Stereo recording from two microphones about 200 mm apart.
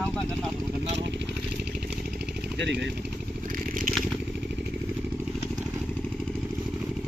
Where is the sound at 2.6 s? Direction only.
60° right (ahead or behind).